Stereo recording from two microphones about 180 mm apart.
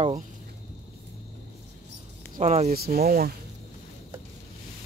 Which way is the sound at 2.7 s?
60° right (ahead or behind).